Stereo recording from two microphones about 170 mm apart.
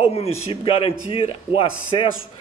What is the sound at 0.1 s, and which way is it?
A man's voice, 35° left (ahead or behind).